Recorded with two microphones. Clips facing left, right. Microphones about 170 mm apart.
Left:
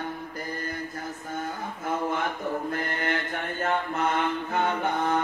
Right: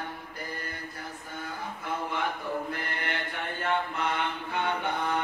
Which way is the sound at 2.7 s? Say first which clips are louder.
Left 6 dB; 45° left (ahead or behind).